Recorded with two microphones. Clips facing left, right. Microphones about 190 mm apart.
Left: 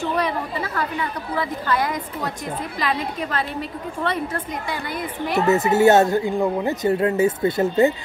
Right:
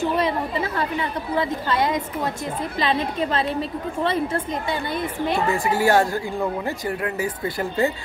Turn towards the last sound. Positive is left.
turn(degrees=25)  # may be behind; listen again after turning